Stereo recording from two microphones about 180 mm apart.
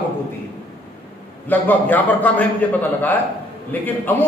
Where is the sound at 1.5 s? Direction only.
10° left (ahead or behind).